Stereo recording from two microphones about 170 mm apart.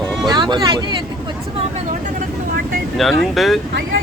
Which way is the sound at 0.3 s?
25° right (ahead or behind).